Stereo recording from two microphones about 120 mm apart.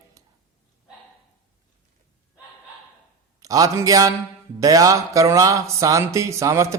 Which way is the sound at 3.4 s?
30° right (ahead or behind).